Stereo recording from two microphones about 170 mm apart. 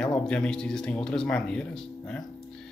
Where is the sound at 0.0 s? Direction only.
5° left (ahead or behind).